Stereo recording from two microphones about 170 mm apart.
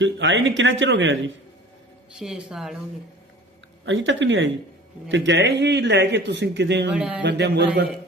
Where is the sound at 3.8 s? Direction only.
90° right.